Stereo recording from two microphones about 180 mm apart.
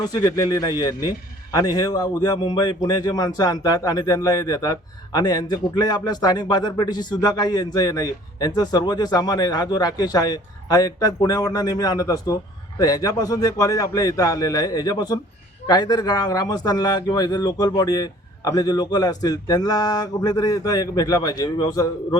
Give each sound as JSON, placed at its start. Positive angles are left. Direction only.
{"t": 0.0, "sound": "speech", "side_deg": 20}